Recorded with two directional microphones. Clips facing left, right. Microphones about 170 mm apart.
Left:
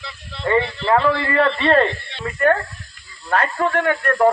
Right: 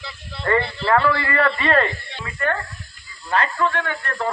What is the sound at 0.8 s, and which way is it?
A man's voice, 25° left (ahead or behind).